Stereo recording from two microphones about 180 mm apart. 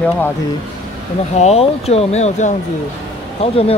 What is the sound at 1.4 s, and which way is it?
Speech, 35° left (ahead or behind).